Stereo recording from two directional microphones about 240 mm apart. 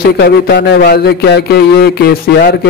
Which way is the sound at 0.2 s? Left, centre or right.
Left.